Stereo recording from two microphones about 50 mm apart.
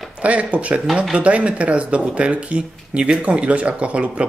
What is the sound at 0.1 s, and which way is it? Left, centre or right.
Speech, right.